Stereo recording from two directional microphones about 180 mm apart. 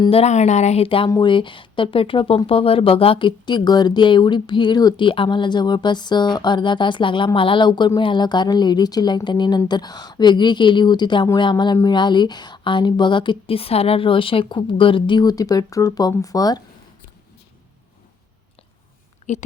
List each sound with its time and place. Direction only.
0.0 s speech: 35° left (ahead or behind)
19.2 s speech: 40° left (ahead or behind)